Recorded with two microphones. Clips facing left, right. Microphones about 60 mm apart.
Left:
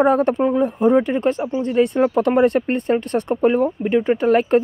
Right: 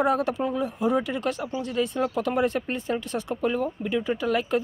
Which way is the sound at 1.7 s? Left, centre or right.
Left.